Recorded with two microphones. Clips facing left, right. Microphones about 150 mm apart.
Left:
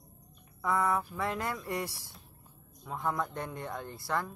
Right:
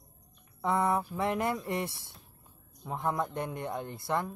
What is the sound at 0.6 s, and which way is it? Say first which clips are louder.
Speech: right 2 dB; 25° right (ahead or behind).